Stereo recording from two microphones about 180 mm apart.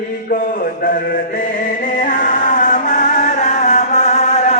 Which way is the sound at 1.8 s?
45° left (ahead or behind).